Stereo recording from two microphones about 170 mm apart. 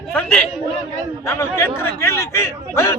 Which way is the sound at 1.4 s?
15° left (ahead or behind).